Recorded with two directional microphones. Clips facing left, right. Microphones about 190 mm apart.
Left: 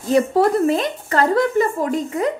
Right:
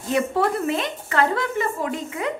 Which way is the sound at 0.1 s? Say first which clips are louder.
Left 6 dB; 40° left (ahead or behind).